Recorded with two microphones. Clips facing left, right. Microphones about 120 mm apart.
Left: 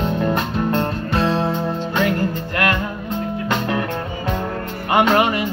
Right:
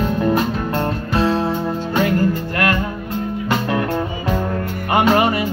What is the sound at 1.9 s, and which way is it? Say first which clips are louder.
Music: right 3 dB; 40° right (ahead or behind).